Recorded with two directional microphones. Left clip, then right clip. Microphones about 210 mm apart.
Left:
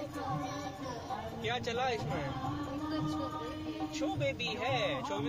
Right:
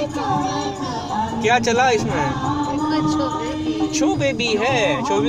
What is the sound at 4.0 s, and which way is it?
Speech, 35° right (ahead or behind).